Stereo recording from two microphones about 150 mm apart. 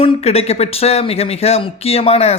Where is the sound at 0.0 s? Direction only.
45° left (ahead or behind).